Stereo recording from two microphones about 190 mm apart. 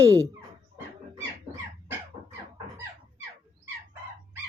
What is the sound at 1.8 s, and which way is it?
Dog, 10° right (ahead or behind).